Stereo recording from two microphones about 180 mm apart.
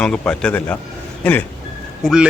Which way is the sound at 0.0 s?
5° left (ahead or behind).